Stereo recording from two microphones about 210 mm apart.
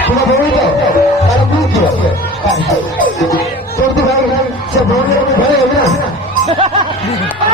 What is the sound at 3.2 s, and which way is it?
Speech, 15° left (ahead or behind).